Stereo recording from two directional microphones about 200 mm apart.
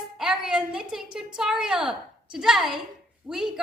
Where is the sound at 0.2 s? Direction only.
5° right (ahead or behind).